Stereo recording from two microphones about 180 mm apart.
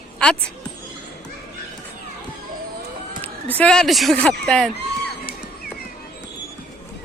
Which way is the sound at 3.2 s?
10° left (ahead or behind).